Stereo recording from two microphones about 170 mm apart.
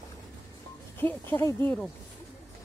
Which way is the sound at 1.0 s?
10° left (ahead or behind).